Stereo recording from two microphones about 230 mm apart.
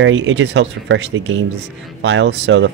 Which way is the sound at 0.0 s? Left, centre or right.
Right.